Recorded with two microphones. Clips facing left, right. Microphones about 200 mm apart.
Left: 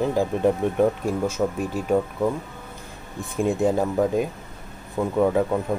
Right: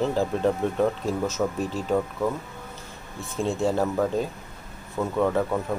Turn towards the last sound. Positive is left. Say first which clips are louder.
# left 3 dB
turn(degrees=10)  # may be behind; listen again after turning